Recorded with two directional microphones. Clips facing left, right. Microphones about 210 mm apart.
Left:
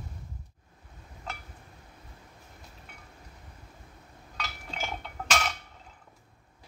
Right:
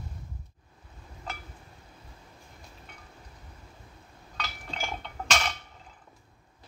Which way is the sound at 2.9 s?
10° left (ahead or behind).